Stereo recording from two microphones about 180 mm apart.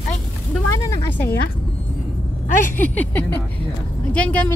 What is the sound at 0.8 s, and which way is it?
Speech, 10° left (ahead or behind).